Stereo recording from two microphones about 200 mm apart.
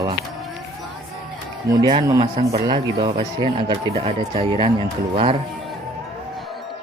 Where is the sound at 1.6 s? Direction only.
20° right (ahead or behind).